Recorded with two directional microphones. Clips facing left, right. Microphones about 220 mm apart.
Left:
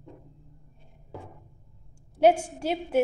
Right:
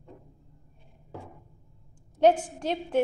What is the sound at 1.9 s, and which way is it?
A woman's voice, 10° left (ahead or behind).